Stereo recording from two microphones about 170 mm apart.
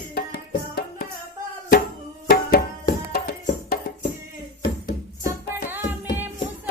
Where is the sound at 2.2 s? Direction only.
60° left (ahead or behind).